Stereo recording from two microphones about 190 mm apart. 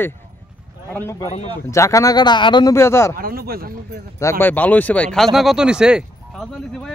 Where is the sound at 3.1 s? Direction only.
50° right (ahead or behind).